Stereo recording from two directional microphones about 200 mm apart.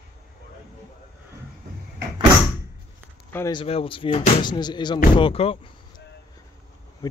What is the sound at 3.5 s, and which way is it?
Speech, 25° left (ahead or behind).